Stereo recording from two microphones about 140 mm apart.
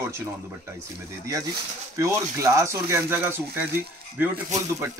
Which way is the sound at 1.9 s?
20° right (ahead or behind).